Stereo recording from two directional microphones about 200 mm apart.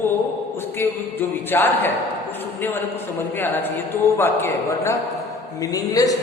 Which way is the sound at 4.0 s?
10° left (ahead or behind).